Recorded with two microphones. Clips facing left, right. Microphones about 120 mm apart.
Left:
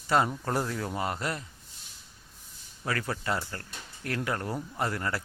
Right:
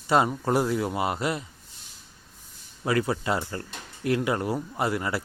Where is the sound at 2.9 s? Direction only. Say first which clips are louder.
Right 6 dB; 15° right (ahead or behind).